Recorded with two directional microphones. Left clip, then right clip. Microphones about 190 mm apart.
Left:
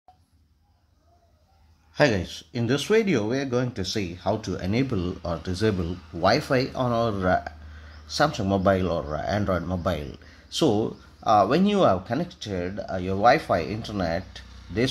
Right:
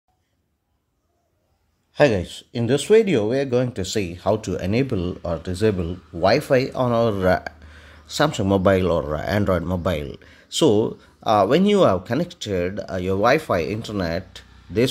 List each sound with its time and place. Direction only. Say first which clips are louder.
2.0 s speech: right 4 dB; 20° right (ahead or behind)